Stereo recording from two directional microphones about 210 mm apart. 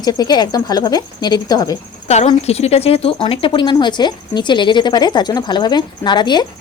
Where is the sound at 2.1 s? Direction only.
30° left (ahead or behind).